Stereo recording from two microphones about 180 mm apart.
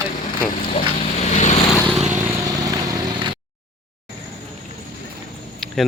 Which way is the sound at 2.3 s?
20° right (ahead or behind).